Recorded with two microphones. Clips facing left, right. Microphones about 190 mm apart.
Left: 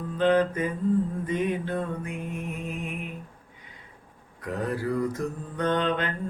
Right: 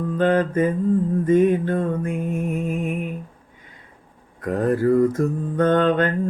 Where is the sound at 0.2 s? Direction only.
50° right (ahead or behind).